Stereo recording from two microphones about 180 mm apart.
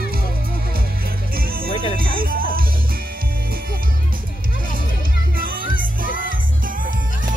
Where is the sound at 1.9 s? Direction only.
55° right (ahead or behind).